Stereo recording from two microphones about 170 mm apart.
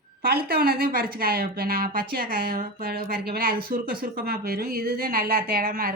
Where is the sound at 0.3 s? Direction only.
65° right (ahead or behind).